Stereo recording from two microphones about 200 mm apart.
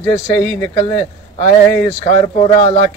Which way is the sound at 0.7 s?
20° left (ahead or behind).